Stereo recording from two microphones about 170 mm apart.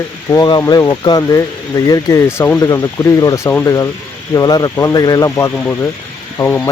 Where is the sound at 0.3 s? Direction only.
25° left (ahead or behind).